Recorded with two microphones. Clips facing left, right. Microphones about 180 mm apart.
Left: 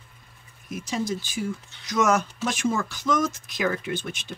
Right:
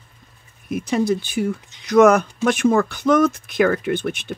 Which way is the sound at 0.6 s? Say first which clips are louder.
Right 9 dB; 60° right (ahead or behind).